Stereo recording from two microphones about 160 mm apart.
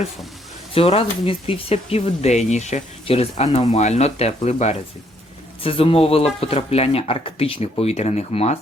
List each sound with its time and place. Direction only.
0.7 s speech: 35° left (ahead or behind)